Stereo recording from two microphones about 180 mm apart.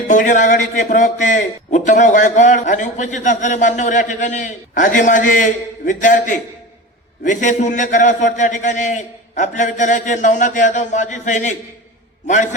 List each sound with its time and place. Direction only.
0.1 s a man's voice: 45° left (ahead or behind)